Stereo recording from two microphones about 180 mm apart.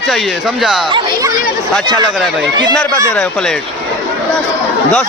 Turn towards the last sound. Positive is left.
turn(degrees=5)  # may be behind; listen again after turning